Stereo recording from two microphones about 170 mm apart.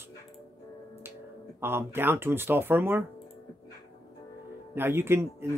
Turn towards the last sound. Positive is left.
turn(degrees=-15)  # may be behind; listen again after turning